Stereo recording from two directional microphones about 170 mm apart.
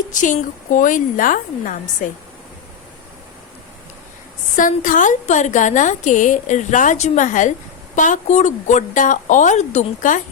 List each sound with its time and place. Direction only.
0.1 s a woman's voice: 50° left (ahead or behind)
4.5 s a woman's voice: 50° left (ahead or behind)